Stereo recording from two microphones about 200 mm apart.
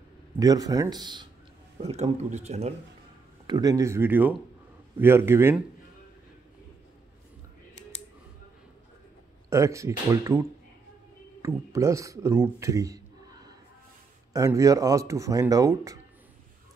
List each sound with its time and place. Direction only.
0.4 s speech: 20° right (ahead or behind)
3.4 s a man's voice: 20° right (ahead or behind)
9.5 s a man's voice: 15° right (ahead or behind)
11.4 s a man's voice: 15° right (ahead or behind)
14.3 s a man's voice: 15° right (ahead or behind)